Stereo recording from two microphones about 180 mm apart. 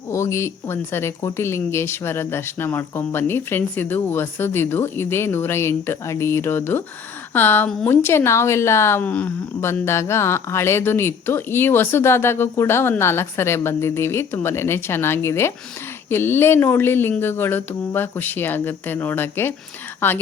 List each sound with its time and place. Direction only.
0.1 s a woman's voice: 15° left (ahead or behind)